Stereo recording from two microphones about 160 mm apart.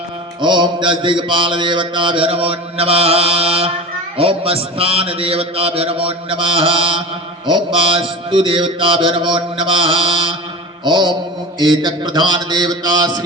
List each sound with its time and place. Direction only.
0.4 s mantra: 30° right (ahead or behind)